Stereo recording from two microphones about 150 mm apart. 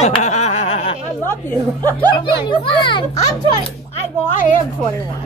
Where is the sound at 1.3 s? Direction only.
15° left (ahead or behind).